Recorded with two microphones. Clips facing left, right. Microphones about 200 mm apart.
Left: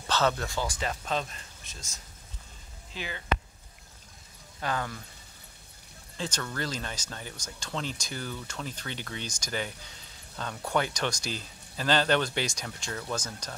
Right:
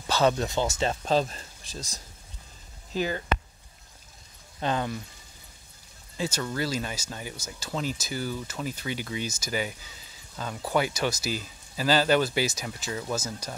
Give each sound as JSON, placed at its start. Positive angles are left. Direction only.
{"t": 0.0, "sound": "speech", "side_deg": -15}
{"t": 4.6, "sound": "speech", "side_deg": -20}
{"t": 6.1, "sound": "speech", "side_deg": -10}